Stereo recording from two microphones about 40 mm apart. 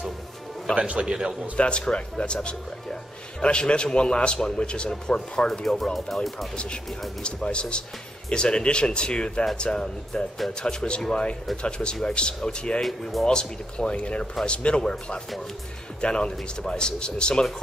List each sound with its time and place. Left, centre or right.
0.7 s a man's voice: right
1.6 s a man's voice: left
5.9 s speech: centre
6.5 s a man's voice: left
12.8 s a man's voice: centre; by 17.5 s left